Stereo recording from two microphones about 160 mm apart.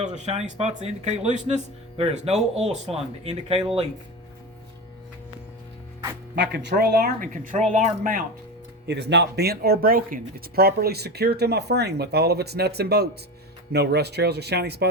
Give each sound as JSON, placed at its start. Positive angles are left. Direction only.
{"t": 0.0, "sound": "speech", "side_deg": -45}
{"t": 6.3, "sound": "speech", "side_deg": -90}
{"t": 8.9, "sound": "speech", "side_deg": -90}